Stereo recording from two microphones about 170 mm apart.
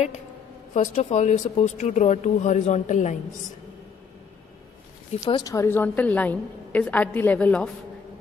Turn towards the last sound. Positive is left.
turn(degrees=10)  # may be behind; listen again after turning